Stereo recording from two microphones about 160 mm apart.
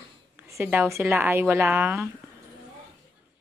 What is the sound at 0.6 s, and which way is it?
A woman's voice, 15° right (ahead or behind).